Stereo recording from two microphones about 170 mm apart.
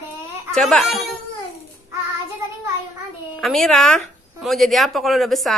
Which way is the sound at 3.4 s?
Centre (ahead or behind).